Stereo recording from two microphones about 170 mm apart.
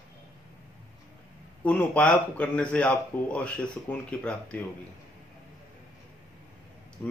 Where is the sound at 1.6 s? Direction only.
10° left (ahead or behind).